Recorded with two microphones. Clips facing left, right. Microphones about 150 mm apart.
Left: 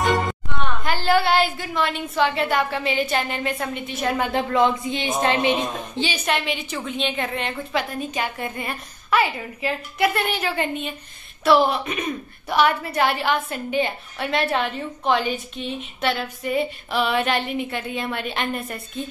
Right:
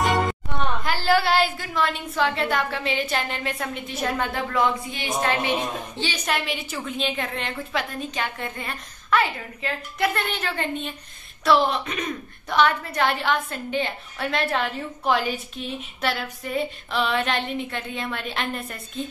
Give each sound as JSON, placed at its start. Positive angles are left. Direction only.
{"t": 0.0, "sound": "music", "side_deg": 0}
{"t": 0.8, "sound": "a woman's voice", "side_deg": 0}
{"t": 4.3, "sound": "a woman's voice", "side_deg": 25}
{"t": 6.2, "sound": "a woman's voice", "side_deg": 0}